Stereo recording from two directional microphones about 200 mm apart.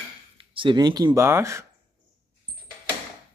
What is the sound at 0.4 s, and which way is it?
Speech, 25° right (ahead or behind).